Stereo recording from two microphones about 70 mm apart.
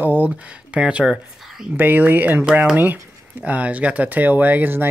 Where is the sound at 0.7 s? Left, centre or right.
Centre.